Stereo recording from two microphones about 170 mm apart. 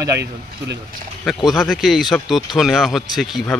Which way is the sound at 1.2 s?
Centre (ahead or behind).